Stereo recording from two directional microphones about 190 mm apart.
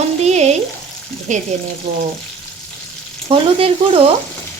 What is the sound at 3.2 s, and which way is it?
Speech, 30° right (ahead or behind).